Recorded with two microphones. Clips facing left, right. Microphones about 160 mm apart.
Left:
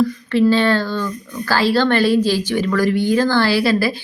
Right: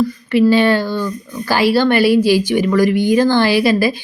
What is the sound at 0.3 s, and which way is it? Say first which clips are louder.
Speech: right 4 dB; 10° right (ahead or behind).